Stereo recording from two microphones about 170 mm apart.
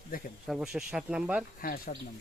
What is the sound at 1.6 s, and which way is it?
Speech, 60° left (ahead or behind).